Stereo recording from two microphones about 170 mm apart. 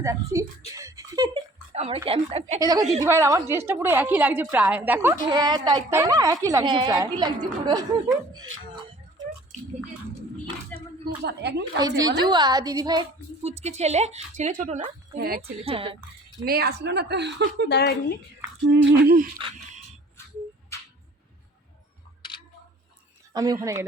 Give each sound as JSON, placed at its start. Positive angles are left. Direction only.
{"t": 0.0, "sound": "a woman's voice", "side_deg": -20}
{"t": 1.7, "sound": "speech", "side_deg": -40}
{"t": 2.6, "sound": "a woman's voice", "side_deg": -20}
{"t": 4.9, "sound": "a woman's voice", "side_deg": -20}
{"t": 10.8, "sound": "a woman's voice", "side_deg": -70}
{"t": 11.8, "sound": "a woman's voice", "side_deg": -20}
{"t": 13.4, "sound": "speech", "side_deg": -40}
{"t": 15.6, "sound": "speech", "side_deg": -30}
{"t": 16.4, "sound": "a woman's voice", "side_deg": -65}
{"t": 17.7, "sound": "speech", "side_deg": 75}
{"t": 18.7, "sound": "humming", "side_deg": -75}
{"t": 23.3, "sound": "a woman's voice", "side_deg": -20}